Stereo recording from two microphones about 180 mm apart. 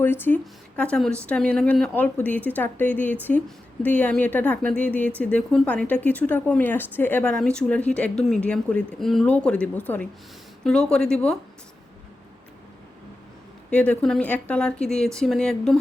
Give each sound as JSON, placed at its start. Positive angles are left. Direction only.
{"t": 0.0, "sound": "speech", "side_deg": 10}
{"t": 13.7, "sound": "speech", "side_deg": 5}